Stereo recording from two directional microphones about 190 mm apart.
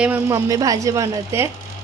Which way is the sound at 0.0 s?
10° right (ahead or behind).